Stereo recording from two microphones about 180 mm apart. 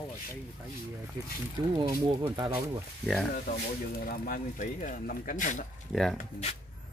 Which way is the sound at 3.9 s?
55° left (ahead or behind).